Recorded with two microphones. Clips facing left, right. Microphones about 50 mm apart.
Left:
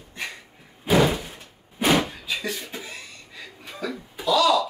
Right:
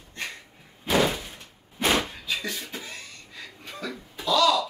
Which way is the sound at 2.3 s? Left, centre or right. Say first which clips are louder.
Left 2 dB; centre.